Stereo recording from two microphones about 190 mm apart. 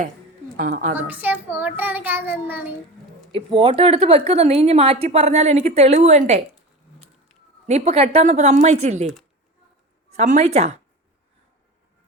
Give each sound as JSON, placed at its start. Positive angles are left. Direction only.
{"t": 0.5, "sound": "a woman's voice", "side_deg": -45}
{"t": 0.9, "sound": "a child's voice", "side_deg": -10}
{"t": 3.3, "sound": "speech", "side_deg": -30}
{"t": 7.7, "sound": "speech", "side_deg": -35}
{"t": 10.2, "sound": "speech", "side_deg": -35}